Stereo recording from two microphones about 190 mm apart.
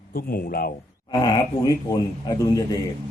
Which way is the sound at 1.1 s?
20° left (ahead or behind).